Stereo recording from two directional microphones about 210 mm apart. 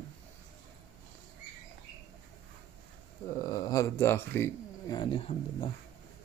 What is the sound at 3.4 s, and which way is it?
Speech, 15° left (ahead or behind).